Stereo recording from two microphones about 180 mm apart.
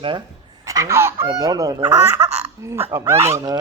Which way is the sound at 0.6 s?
15° right (ahead or behind).